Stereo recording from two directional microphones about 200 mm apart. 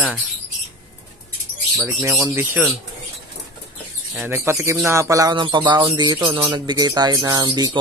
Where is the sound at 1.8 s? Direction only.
10° right (ahead or behind).